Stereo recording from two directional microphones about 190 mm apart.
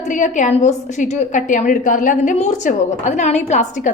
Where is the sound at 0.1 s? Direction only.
40° left (ahead or behind).